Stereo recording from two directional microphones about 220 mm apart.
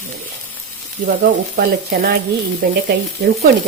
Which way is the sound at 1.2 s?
40° right (ahead or behind).